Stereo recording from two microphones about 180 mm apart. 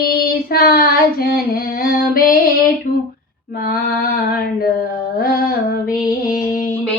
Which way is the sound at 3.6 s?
55° left (ahead or behind).